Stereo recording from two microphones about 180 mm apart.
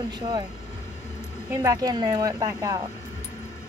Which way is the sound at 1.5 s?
20° right (ahead or behind).